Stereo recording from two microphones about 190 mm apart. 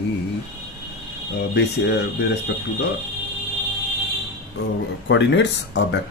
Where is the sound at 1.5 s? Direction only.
60° left (ahead or behind).